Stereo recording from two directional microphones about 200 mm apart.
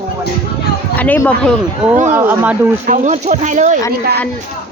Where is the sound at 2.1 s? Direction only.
10° right (ahead or behind).